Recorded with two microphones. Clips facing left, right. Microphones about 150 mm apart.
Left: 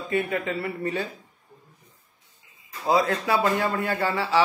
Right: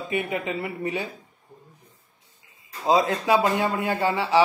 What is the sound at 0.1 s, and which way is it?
Speech, 20° right (ahead or behind).